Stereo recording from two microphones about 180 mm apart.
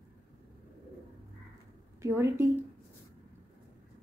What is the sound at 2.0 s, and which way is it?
Speech, 15° right (ahead or behind).